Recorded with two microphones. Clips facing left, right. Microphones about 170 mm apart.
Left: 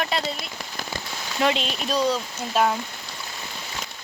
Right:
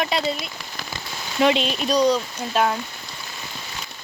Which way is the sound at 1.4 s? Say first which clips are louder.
Right 4 dB; 5° right (ahead or behind).